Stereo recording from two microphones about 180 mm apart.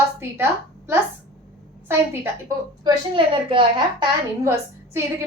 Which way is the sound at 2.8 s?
30° right (ahead or behind).